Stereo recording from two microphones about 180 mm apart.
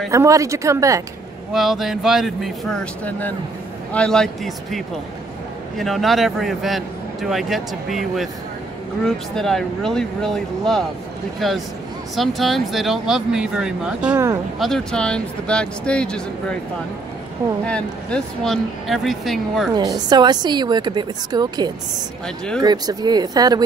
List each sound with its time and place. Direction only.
0.1 s speech: 15° right (ahead or behind)
1.5 s a man's voice: centre (ahead or behind)
14.1 s a woman's voice: 20° right (ahead or behind)
14.6 s a man's voice: 5° left (ahead or behind)
17.6 s a man's voice: 5° left (ahead or behind)
19.7 s a woman's voice: 20° right (ahead or behind)